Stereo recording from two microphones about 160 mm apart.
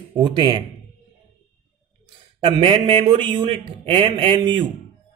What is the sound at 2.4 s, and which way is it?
A man's voice, 35° right (ahead or behind).